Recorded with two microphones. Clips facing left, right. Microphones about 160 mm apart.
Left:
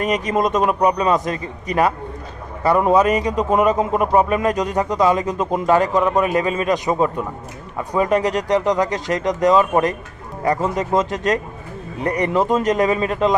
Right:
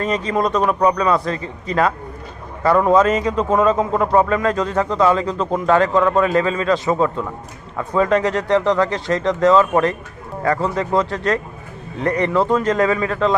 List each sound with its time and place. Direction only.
0.0 s a man's voice: 15° left (ahead or behind)